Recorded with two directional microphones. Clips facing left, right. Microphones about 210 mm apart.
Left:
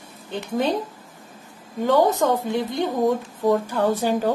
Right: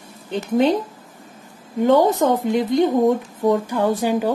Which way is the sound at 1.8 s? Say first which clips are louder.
Right 3 dB; 20° right (ahead or behind).